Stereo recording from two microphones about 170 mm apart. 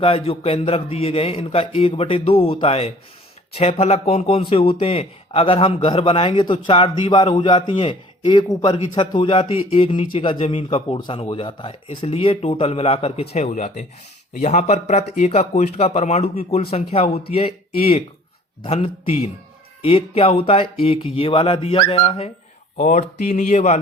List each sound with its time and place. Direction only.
0.0 s speech: 35° left (ahead or behind)
22.8 s speech: 45° left (ahead or behind)